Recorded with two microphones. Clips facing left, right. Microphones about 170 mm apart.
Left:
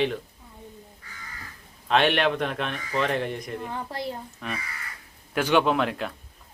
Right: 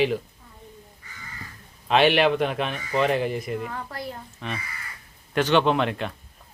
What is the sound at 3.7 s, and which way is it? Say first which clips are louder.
Speech: left 2 dB; 25° left (ahead or behind).